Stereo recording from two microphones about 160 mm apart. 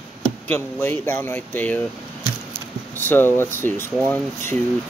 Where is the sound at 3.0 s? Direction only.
15° left (ahead or behind).